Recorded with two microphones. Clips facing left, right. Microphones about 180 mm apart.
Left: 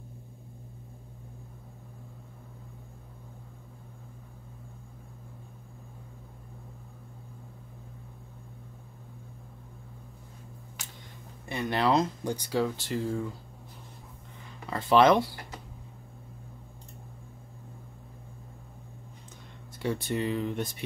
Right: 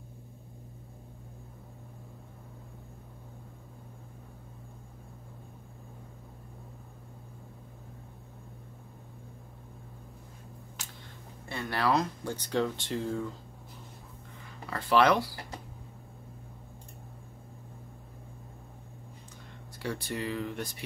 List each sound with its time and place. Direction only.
11.4 s speech: 20° left (ahead or behind)
12.4 s speech: 5° left (ahead or behind)
14.7 s speech: 20° left (ahead or behind)
19.8 s speech: 20° left (ahead or behind)